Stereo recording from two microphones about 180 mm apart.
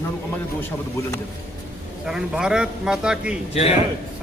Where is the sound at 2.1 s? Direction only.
5° right (ahead or behind).